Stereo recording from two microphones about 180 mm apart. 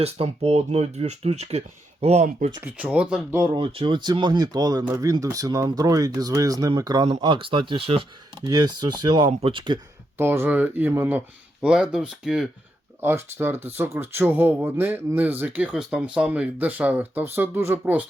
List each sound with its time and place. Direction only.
0.0 s speech: 35° right (ahead or behind)
2.6 s speech: 5° right (ahead or behind)
3.4 s speech: 25° right (ahead or behind)
10.2 s speech: 10° right (ahead or behind)